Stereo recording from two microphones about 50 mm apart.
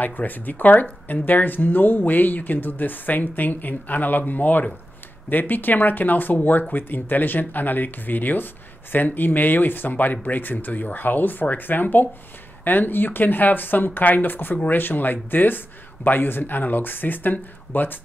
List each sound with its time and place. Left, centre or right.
0.0 s speech: left